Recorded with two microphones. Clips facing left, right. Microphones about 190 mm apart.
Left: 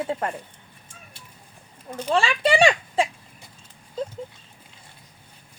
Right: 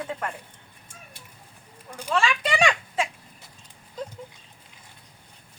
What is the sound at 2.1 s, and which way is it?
Speech, 30° left (ahead or behind).